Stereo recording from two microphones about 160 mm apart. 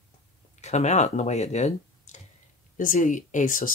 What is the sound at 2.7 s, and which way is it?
Speech, 55° left (ahead or behind).